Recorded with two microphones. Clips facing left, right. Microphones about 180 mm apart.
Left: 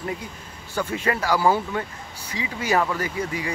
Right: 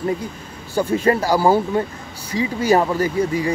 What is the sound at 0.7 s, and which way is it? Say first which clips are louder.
Speech: right 8 dB; 35° right (ahead or behind).